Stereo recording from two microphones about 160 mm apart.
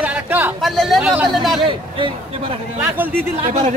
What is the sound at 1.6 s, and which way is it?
Speech, 30° right (ahead or behind).